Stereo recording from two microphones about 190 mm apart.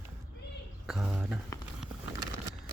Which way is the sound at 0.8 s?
Centre (ahead or behind).